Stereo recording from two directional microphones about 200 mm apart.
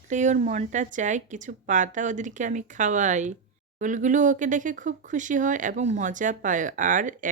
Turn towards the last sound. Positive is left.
turn(degrees=-40)  # may be behind; listen again after turning